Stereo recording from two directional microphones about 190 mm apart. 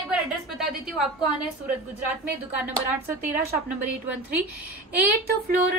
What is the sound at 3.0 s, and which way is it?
Speech, 15° right (ahead or behind).